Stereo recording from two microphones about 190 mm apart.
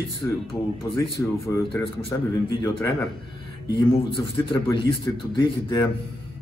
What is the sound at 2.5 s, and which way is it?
Speech, 20° left (ahead or behind).